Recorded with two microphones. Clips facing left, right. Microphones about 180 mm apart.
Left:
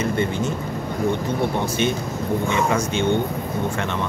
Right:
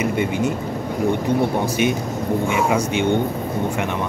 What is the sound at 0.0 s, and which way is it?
Speech, 10° right (ahead or behind).